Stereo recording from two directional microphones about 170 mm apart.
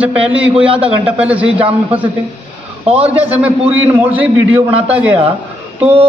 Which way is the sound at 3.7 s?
15° right (ahead or behind).